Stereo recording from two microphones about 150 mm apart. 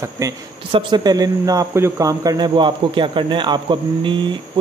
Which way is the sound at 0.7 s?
35° right (ahead or behind).